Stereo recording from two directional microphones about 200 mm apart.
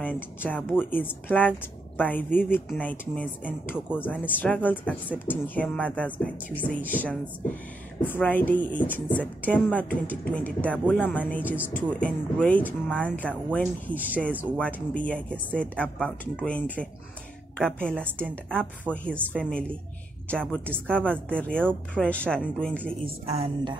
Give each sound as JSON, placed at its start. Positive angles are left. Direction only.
{"t": 0.0, "sound": "speech", "side_deg": 10}
{"t": 13.9, "sound": "speech", "side_deg": -10}
{"t": 14.6, "sound": "speech", "side_deg": 5}
{"t": 23.0, "sound": "a woman's voice", "side_deg": -30}